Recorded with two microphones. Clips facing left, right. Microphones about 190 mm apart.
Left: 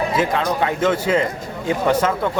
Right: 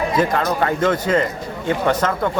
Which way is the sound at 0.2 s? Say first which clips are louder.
Right 2 dB; 5° left (ahead or behind).